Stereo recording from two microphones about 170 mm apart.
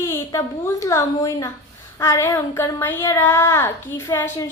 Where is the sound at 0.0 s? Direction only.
15° left (ahead or behind).